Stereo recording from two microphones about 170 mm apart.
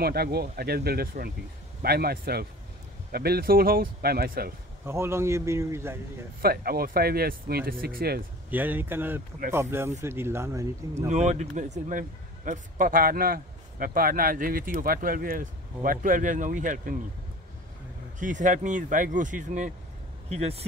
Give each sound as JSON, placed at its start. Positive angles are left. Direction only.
{"t": 0.0, "sound": "a man's voice", "side_deg": -65}
{"t": 4.8, "sound": "a man's voice", "side_deg": -15}
{"t": 6.4, "sound": "a man's voice", "side_deg": -60}
{"t": 8.5, "sound": "a man's voice", "side_deg": -10}
{"t": 11.1, "sound": "a man's voice", "side_deg": -45}
{"t": 18.2, "sound": "speech", "side_deg": -50}